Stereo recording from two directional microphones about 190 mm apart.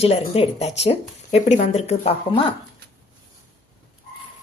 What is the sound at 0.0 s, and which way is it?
Speech, 30° left (ahead or behind).